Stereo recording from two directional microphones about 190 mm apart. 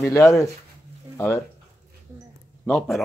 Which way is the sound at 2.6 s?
5° left (ahead or behind).